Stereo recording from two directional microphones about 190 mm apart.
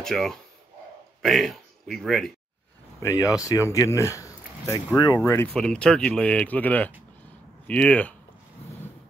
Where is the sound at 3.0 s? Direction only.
20° left (ahead or behind).